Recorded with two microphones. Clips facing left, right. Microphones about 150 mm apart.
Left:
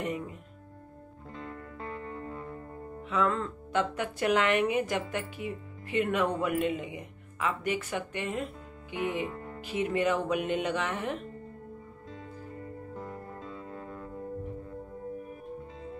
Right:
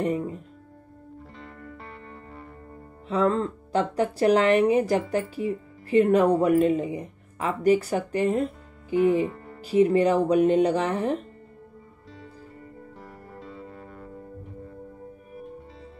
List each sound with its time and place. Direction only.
0.0 s music: 35° right (ahead or behind)
3.1 s speech: 35° right (ahead or behind)